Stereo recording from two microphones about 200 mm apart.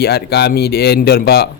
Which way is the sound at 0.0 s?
50° left (ahead or behind).